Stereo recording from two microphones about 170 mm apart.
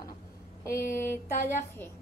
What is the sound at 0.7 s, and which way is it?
Speech, 60° left (ahead or behind).